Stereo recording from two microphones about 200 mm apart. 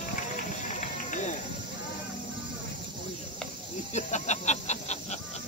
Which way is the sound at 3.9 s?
35° left (ahead or behind).